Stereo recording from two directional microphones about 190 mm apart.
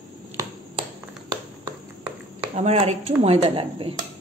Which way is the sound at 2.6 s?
35° right (ahead or behind).